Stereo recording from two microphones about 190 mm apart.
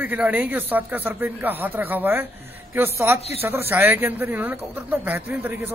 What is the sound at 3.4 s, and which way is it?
Speech, 10° right (ahead or behind).